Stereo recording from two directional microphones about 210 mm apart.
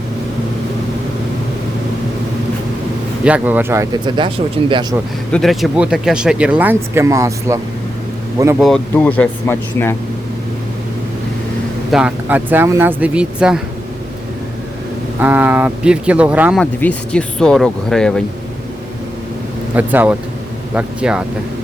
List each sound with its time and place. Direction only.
3.2 s a man's voice: 5° right (ahead or behind)
5.3 s speech: centre (ahead or behind); by 7.6 s 15° right (ahead or behind)
8.5 s speech: centre (ahead or behind)
11.9 s speech: 5° right (ahead or behind)
15.2 s speech: 10° right (ahead or behind)
16.8 s speech: 5° left (ahead or behind)
19.7 s speech: 10° right (ahead or behind)